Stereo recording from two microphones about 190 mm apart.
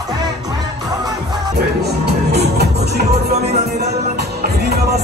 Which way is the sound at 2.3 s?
60° right (ahead or behind).